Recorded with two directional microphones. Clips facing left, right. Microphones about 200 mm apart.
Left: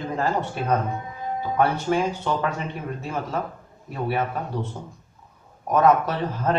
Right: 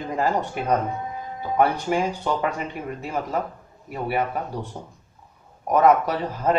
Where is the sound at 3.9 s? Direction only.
10° right (ahead or behind).